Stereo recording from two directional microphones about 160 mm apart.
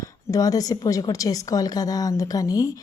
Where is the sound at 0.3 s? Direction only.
25° left (ahead or behind).